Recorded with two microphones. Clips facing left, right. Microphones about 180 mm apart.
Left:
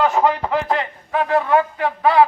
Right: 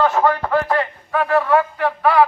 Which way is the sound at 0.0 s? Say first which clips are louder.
Even; 15° left (ahead or behind).